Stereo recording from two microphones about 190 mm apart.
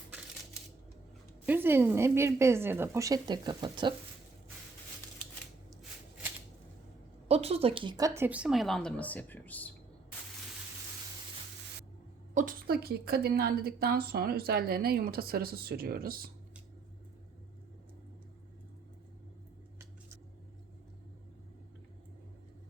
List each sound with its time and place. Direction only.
1.5 s speech: 10° right (ahead or behind)
7.3 s speech: 35° right (ahead or behind); by 9.7 s 10° left (ahead or behind)
12.3 s a woman's voice: 45° right (ahead or behind)